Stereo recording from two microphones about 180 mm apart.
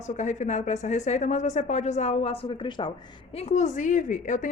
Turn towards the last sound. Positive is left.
turn(degrees=45)  # may be behind; listen again after turning